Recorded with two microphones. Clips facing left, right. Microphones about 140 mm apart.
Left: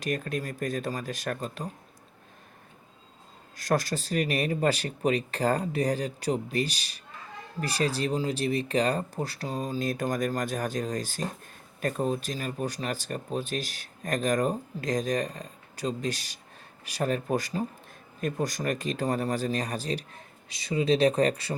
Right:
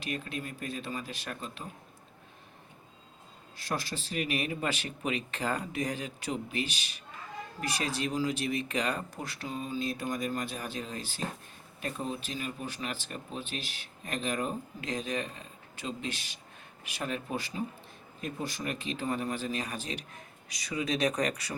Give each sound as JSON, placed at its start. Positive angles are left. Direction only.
{"t": 0.0, "sound": "speech", "side_deg": 45}
{"t": 3.6, "sound": "speech", "side_deg": 45}